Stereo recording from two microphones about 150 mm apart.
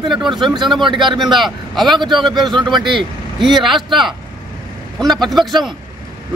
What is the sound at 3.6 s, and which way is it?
Speech, centre (ahead or behind).